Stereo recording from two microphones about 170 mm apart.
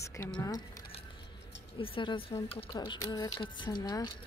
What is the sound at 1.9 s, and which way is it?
Speech, 30° left (ahead or behind).